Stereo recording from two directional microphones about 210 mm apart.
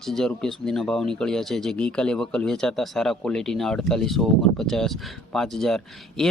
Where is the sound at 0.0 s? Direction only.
Centre (ahead or behind).